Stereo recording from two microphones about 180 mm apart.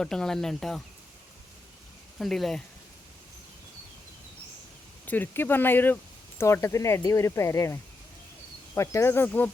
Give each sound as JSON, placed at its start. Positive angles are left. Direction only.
{"t": 0.0, "sound": "speech", "side_deg": 5}
{"t": 2.1, "sound": "speech", "side_deg": 0}
{"t": 5.0, "sound": "speech", "side_deg": 10}